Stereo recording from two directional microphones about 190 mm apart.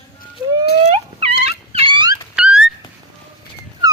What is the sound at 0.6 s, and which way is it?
Turkey, 60° left (ahead or behind).